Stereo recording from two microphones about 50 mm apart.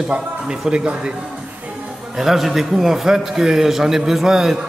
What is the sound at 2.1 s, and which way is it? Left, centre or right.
A man's voice, centre.